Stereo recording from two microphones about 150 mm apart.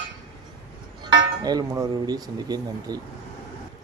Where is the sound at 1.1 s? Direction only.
25° right (ahead or behind).